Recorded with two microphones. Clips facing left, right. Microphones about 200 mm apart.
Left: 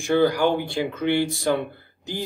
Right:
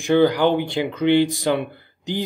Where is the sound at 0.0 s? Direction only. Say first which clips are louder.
Right 3 dB; 20° right (ahead or behind).